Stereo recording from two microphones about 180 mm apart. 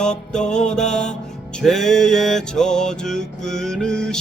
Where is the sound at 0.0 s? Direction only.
5° left (ahead or behind).